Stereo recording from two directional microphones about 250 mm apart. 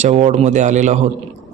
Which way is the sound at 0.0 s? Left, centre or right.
Right.